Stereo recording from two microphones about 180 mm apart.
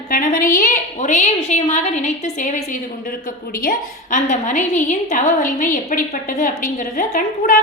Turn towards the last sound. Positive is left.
turn(degrees=50)  # may be behind; listen again after turning